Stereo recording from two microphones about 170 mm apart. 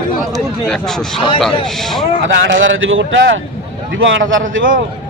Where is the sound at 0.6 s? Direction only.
5° left (ahead or behind).